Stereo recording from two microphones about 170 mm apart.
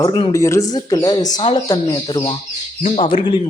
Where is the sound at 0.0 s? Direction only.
25° left (ahead or behind).